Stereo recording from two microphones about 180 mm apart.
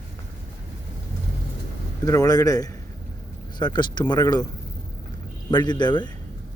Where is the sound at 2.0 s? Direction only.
20° left (ahead or behind).